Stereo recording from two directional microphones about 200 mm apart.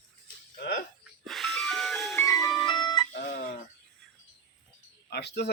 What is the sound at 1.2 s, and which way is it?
Ice cream truck, centre (ahead or behind).